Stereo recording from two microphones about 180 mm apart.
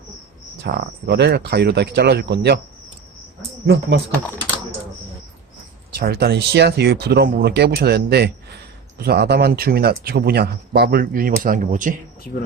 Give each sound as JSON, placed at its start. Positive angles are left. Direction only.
{"t": 0.6, "sound": "speech", "side_deg": -65}
{"t": 3.7, "sound": "speech", "side_deg": -70}
{"t": 6.0, "sound": "speech", "side_deg": -60}